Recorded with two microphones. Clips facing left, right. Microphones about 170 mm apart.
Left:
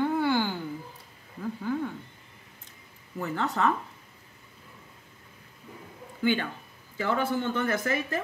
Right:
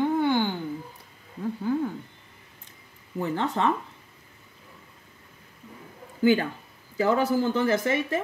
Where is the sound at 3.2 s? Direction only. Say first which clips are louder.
Right 2 dB; 30° right (ahead or behind).